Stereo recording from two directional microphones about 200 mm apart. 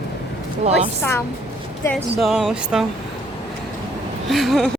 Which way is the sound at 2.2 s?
Centre (ahead or behind).